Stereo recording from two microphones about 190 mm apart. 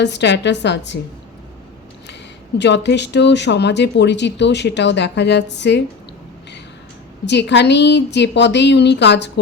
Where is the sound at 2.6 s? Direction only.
65° left (ahead or behind).